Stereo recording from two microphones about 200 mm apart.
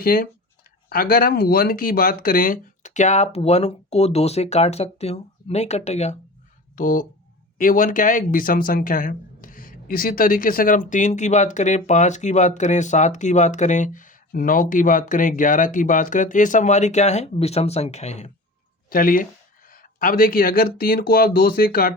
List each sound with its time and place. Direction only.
0.0 s speech: 45° left (ahead or behind)
18.9 s speech: 45° left (ahead or behind)